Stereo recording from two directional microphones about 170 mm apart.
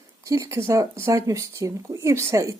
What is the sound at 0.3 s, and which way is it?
Speech, 20° right (ahead or behind).